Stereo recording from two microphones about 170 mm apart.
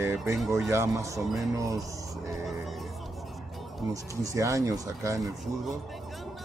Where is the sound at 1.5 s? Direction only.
20° right (ahead or behind).